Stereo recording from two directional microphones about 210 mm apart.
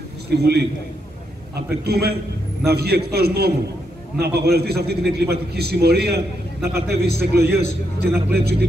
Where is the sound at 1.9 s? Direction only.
50° right (ahead or behind).